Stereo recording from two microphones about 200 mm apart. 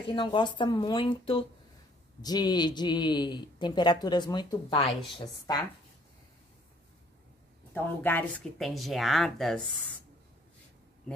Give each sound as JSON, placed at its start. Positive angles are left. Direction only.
{"t": 0.1, "sound": "speech", "side_deg": 25}
{"t": 7.7, "sound": "speech", "side_deg": 10}